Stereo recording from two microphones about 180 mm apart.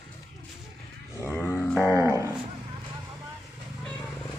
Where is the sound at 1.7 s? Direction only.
15° left (ahead or behind).